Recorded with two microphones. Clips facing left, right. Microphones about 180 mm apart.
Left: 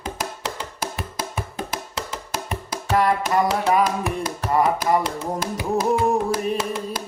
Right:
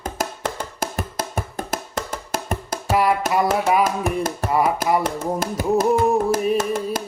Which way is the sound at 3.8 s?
45° right (ahead or behind).